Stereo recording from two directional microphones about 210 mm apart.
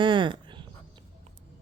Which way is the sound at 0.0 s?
20° right (ahead or behind).